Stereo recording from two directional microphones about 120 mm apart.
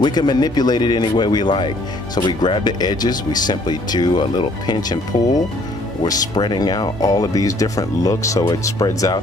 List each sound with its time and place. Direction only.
0.0 s speech: 35° left (ahead or behind)